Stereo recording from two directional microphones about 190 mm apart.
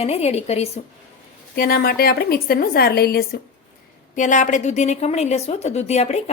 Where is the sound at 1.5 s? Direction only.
50° left (ahead or behind).